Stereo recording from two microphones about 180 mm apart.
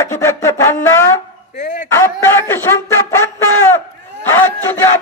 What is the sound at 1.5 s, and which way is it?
Dog, 45° left (ahead or behind).